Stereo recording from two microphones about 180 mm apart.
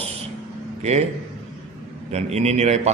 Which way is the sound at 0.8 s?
35° right (ahead or behind).